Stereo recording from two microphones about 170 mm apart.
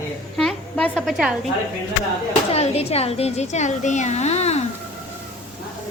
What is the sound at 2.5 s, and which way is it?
A woman's voice, 35° left (ahead or behind).